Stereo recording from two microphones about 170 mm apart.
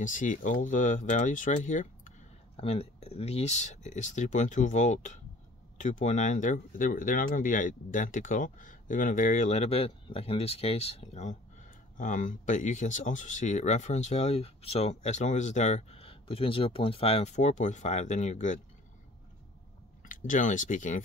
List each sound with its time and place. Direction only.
0.0 s speech: 50° left (ahead or behind)
2.5 s speech: 35° left (ahead or behind)
20.0 s speech: 50° left (ahead or behind)